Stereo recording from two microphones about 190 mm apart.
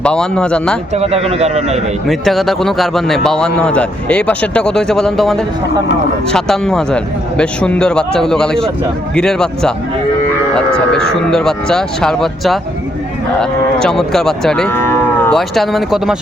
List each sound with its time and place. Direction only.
0.0 s a man's voice: 5° left (ahead or behind)
0.9 s a man's voice: 35° right (ahead or behind)
2.0 s a man's voice: centre (ahead or behind)